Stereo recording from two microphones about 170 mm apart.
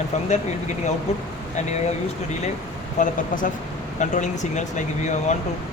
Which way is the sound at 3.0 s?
50° left (ahead or behind).